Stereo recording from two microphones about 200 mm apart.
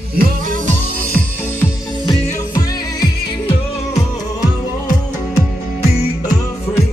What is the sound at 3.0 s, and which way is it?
Music, 25° left (ahead or behind).